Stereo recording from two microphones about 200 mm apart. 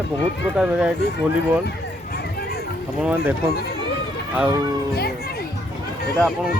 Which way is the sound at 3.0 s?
10° right (ahead or behind).